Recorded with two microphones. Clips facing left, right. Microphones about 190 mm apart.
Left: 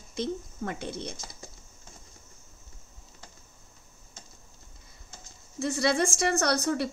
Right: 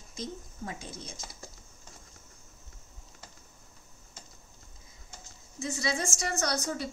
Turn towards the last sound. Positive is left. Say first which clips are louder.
# left 6 dB
turn(degrees=65)  # may be behind; listen again after turning